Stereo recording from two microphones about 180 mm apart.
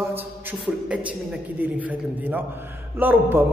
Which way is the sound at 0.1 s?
10° right (ahead or behind).